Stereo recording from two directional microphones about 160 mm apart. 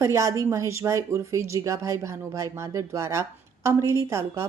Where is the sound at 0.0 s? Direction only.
20° right (ahead or behind).